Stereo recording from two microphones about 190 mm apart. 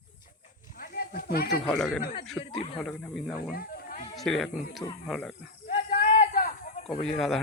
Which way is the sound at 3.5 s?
50° left (ahead or behind).